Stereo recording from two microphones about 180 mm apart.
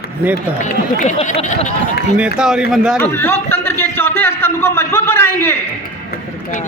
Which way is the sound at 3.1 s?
10° left (ahead or behind).